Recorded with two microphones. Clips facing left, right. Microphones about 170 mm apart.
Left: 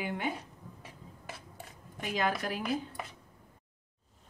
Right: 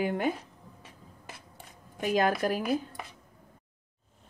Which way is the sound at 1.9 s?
45° right (ahead or behind).